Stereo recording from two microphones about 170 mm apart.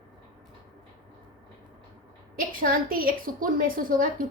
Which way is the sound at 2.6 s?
55° right (ahead or behind).